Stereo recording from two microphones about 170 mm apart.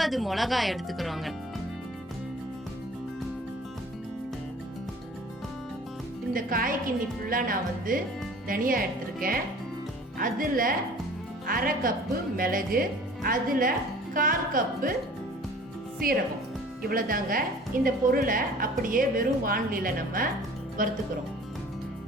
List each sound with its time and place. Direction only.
0.0 s speech: centre (ahead or behind)
6.3 s speech: 55° right (ahead or behind)
16.0 s speech: 60° right (ahead or behind)